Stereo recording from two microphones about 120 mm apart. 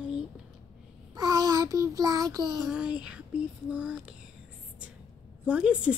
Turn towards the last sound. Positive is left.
turn(degrees=-10)  # may be behind; listen again after turning